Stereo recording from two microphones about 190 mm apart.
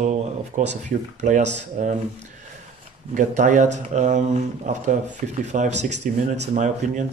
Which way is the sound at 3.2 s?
40° right (ahead or behind).